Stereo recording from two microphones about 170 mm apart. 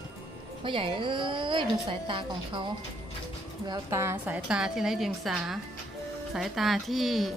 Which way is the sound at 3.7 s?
15° right (ahead or behind).